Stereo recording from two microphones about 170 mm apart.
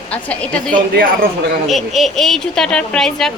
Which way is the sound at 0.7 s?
55° right (ahead or behind).